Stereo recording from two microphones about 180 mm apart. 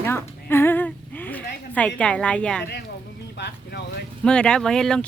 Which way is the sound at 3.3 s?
70° left (ahead or behind).